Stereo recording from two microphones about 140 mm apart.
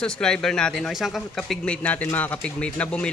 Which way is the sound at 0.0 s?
5° left (ahead or behind).